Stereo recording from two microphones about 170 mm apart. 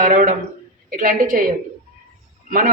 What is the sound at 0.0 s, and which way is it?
Speech, 55° right (ahead or behind).